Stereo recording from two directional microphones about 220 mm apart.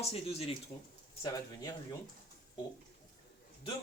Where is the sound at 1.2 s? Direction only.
15° left (ahead or behind).